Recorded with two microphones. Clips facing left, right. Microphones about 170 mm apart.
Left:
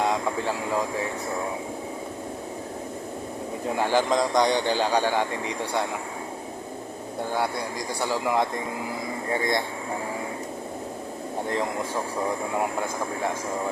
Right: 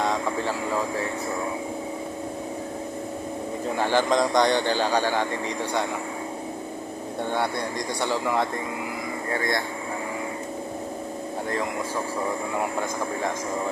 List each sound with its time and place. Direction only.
0.0 s vehicle: 10° left (ahead or behind)
3.8 s speech: 10° left (ahead or behind)
9.3 s speech: 20° left (ahead or behind)